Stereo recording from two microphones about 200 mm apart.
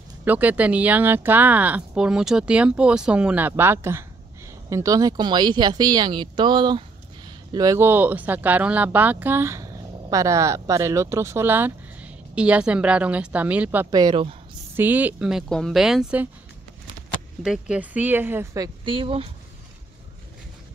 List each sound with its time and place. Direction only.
0.2 s speech: 10° right (ahead or behind)
13.8 s speech: 20° right (ahead or behind)
14.8 s a woman's voice: 10° right (ahead or behind)
17.4 s speech: 5° right (ahead or behind); by 19.2 s 25° right (ahead or behind)